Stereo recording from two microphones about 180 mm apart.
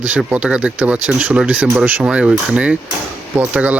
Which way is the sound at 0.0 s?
10° right (ahead or behind).